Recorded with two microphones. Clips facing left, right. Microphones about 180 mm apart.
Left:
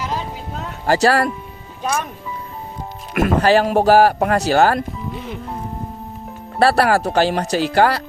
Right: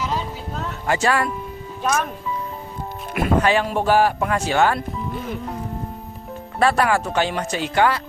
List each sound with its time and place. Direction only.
0.9 s a man's voice: 35° left (ahead or behind)
3.2 s a man's voice: 35° left (ahead or behind)
6.6 s a man's voice: 35° left (ahead or behind)